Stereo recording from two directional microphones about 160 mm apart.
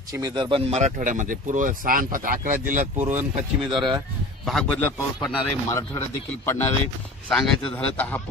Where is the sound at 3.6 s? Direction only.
30° right (ahead or behind).